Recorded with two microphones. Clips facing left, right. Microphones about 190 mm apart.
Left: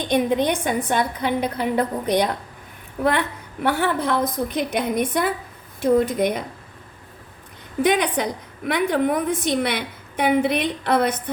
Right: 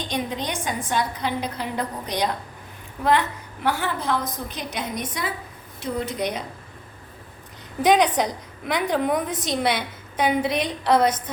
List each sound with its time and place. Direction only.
0.0 s a woman's voice: 55° left (ahead or behind)
7.9 s a woman's voice: 55° left (ahead or behind)